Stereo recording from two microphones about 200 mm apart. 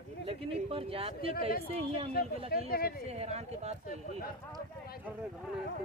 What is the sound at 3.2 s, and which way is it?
Speech, 30° right (ahead or behind).